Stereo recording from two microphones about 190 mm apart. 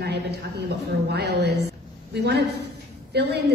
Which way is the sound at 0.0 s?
60° right (ahead or behind).